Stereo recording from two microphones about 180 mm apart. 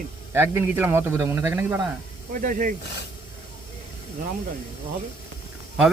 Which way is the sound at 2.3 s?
50° right (ahead or behind).